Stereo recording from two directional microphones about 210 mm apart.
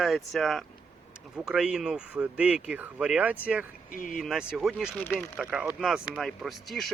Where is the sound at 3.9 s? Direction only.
40° left (ahead or behind).